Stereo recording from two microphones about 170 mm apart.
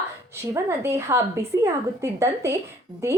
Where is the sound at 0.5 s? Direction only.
15° right (ahead or behind).